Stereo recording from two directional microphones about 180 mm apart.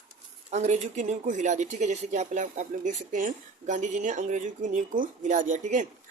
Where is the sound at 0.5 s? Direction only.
40° right (ahead or behind).